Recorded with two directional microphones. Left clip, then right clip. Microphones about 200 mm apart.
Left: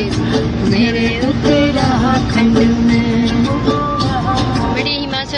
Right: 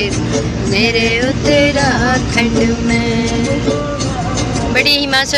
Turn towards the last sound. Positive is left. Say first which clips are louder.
# right 6 dB
turn(degrees=-5)  # may be behind; listen again after turning